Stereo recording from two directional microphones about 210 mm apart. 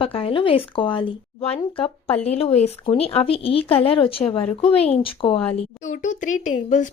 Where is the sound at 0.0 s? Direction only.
25° left (ahead or behind).